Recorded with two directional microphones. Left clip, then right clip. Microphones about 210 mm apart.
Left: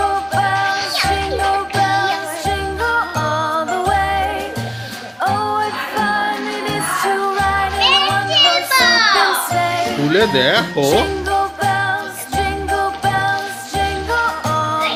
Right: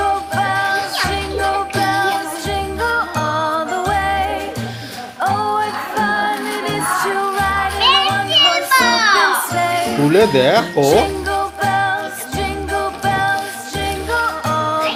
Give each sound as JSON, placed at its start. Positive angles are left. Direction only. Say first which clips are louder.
{"t": 0.3, "sound": "music", "louder": "left 2 dB", "side_deg": 0}
{"t": 7.8, "sound": "music", "louder": "right 1 dB", "side_deg": 15}
{"t": 9.1, "sound": "music", "louder": "even", "side_deg": 0}
{"t": 10.8, "sound": "speech", "louder": "right 2 dB", "side_deg": 0}
{"t": 11.7, "sound": "music", "louder": "right 1 dB", "side_deg": 0}